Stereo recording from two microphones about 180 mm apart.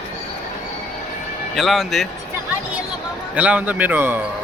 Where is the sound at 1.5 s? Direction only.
Centre (ahead or behind).